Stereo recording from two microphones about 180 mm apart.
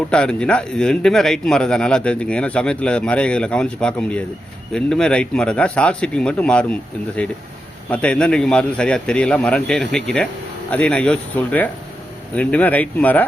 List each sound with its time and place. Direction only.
0.1 s speech: 5° left (ahead or behind)